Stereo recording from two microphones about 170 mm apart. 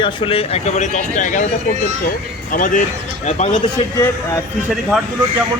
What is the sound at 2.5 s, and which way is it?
Speech, 50° left (ahead or behind).